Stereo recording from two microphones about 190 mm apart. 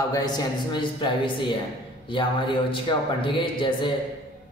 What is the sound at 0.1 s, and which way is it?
A man's voice, 20° left (ahead or behind).